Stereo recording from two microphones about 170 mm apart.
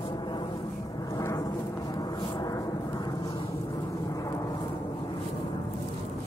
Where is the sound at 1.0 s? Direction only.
20° left (ahead or behind).